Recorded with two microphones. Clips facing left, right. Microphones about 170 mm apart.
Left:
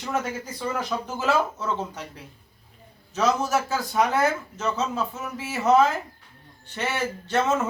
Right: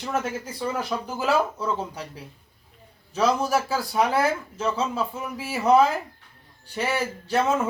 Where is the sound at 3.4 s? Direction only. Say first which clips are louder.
Right 1 dB; 10° right (ahead or behind).